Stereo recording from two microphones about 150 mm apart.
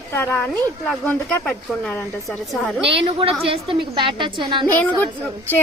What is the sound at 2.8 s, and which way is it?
A woman's voice, 40° right (ahead or behind).